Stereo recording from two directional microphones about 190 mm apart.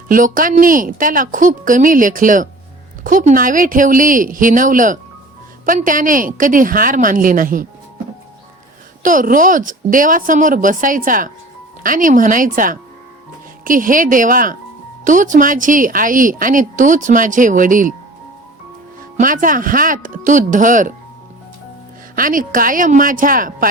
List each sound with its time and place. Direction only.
0.1 s a woman's voice: 45° right (ahead or behind)
9.0 s a woman's voice: 45° right (ahead or behind)
19.1 s a woman's voice: 45° right (ahead or behind)
22.1 s a woman's voice: 45° right (ahead or behind)